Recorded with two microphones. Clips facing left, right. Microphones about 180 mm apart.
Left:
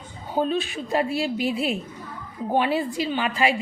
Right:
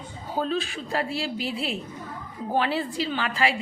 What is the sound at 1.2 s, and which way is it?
A woman's voice, 15° left (ahead or behind).